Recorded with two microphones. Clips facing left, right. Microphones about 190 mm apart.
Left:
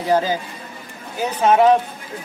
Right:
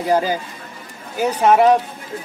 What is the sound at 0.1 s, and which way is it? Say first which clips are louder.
A man's voice: even; 15° right (ahead or behind).